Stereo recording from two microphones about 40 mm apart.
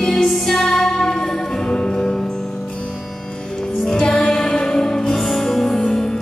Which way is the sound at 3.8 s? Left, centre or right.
Centre.